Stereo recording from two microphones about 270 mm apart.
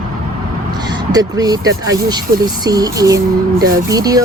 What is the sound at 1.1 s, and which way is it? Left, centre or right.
Speech, centre.